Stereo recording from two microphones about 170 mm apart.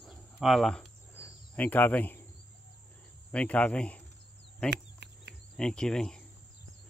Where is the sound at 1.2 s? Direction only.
10° left (ahead or behind).